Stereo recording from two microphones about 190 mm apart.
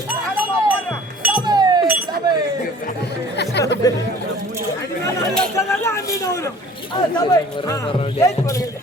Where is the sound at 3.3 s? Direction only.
60° left (ahead or behind).